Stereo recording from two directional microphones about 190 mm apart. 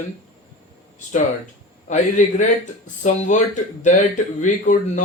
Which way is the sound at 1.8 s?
40° left (ahead or behind).